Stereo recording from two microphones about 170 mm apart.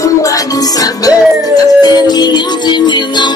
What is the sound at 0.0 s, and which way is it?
Music, 20° left (ahead or behind).